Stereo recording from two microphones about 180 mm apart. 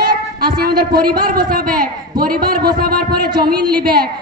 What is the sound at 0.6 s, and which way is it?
A man's voice, 55° right (ahead or behind).